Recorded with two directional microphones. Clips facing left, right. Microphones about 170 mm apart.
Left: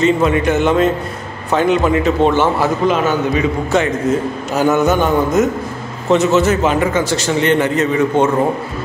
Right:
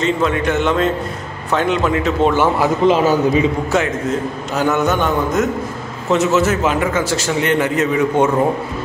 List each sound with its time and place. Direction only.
0.0 s a man's voice: 5° left (ahead or behind)
2.3 s speech: 10° right (ahead or behind)
2.9 s a man's voice: 30° right (ahead or behind)
3.7 s a man's voice: 5° right (ahead or behind)